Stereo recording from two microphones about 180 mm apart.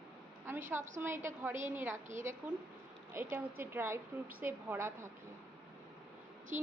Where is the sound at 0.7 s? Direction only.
15° right (ahead or behind).